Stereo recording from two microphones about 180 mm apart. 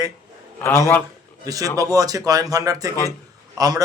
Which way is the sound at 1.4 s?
20° right (ahead or behind).